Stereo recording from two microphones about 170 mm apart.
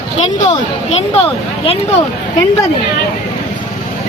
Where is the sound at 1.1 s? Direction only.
35° left (ahead or behind).